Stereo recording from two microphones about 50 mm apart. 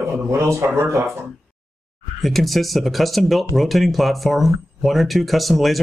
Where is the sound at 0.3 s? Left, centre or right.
Right.